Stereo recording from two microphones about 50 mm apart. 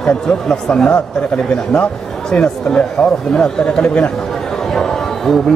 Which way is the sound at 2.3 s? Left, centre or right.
Centre.